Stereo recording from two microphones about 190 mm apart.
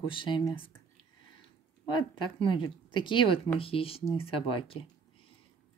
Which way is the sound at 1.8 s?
25° left (ahead or behind).